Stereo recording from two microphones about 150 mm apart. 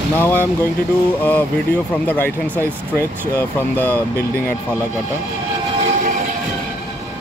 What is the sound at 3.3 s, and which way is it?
Speech, 15° left (ahead or behind).